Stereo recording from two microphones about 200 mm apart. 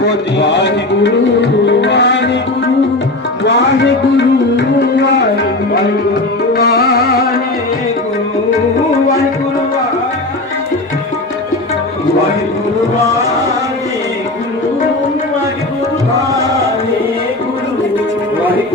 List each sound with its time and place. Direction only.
0.0 s music: 60° left (ahead or behind)
3.4 s music: 60° left (ahead or behind)
6.5 s music: 50° left (ahead or behind)